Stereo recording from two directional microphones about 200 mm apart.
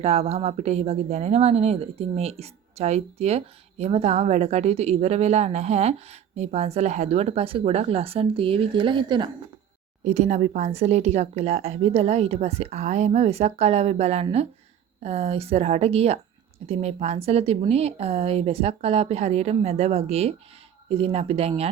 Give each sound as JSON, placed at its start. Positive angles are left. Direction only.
{"t": 0.0, "sound": "speech", "side_deg": -30}
{"t": 10.0, "sound": "speech", "side_deg": -35}